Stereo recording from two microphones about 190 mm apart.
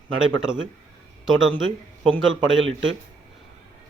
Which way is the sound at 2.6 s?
85° right.